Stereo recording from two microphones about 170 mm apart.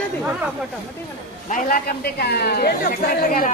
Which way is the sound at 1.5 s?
60° left (ahead or behind).